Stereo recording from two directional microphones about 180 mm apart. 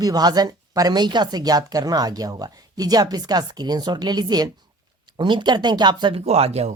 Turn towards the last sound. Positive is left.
turn(degrees=-35)  # may be behind; listen again after turning